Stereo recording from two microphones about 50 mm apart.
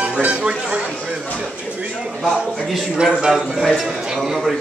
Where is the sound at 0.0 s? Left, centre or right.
Right.